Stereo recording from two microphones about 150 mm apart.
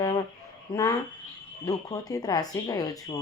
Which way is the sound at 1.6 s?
25° left (ahead or behind).